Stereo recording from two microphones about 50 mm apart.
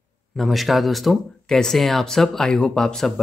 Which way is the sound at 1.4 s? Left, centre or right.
Centre.